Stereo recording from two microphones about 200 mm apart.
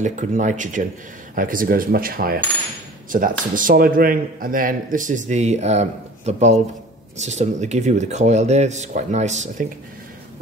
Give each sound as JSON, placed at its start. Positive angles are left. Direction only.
{"t": 0.0, "sound": "speech", "side_deg": -40}